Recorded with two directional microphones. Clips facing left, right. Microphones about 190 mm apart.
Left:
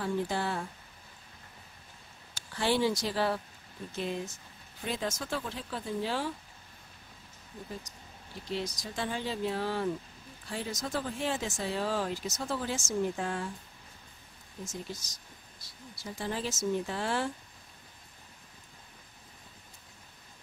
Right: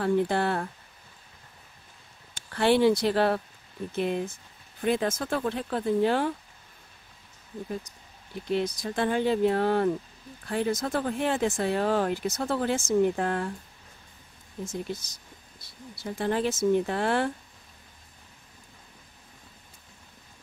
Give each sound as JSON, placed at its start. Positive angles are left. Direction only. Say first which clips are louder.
{"t": 0.0, "sound": "speech", "louder": "right 7 dB", "side_deg": -60}
{"t": 2.5, "sound": "speech", "louder": "right 7 dB", "side_deg": -60}
{"t": 8.5, "sound": "speech", "louder": "right 8 dB", "side_deg": -55}
{"t": 14.6, "sound": "speech", "louder": "right 7 dB", "side_deg": -60}